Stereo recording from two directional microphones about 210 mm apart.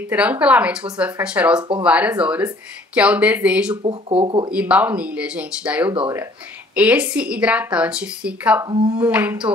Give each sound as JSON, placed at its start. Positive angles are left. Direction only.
{"t": 0.1, "sound": "speech", "side_deg": -5}
{"t": 3.8, "sound": "speech", "side_deg": -25}
{"t": 4.5, "sound": "speech", "side_deg": -5}
{"t": 8.6, "sound": "speech", "side_deg": -20}